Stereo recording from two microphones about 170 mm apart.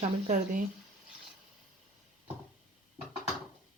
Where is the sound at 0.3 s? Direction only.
45° right (ahead or behind).